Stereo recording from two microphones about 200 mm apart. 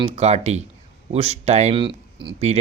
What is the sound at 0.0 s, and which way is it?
Speech, 30° right (ahead or behind).